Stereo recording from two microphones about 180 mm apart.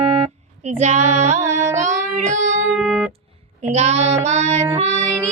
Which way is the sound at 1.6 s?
15° right (ahead or behind).